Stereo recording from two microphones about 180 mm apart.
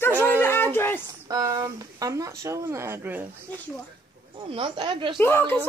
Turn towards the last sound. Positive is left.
turn(degrees=15)  # may be behind; listen again after turning